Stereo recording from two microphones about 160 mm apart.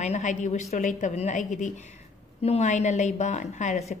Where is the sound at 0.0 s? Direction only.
50° left (ahead or behind).